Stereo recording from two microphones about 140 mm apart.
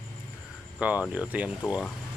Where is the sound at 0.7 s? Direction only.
10° right (ahead or behind).